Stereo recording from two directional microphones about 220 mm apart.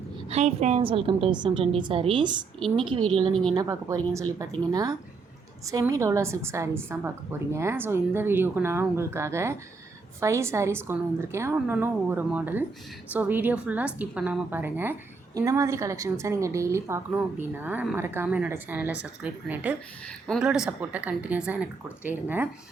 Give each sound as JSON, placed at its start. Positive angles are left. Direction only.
{"t": 0.3, "sound": "a woman's voice", "side_deg": -30}